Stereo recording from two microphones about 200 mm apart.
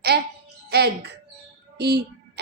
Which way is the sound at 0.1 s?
55° right (ahead or behind).